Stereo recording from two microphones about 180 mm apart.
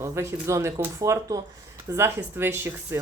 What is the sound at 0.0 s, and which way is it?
Speech, 15° right (ahead or behind).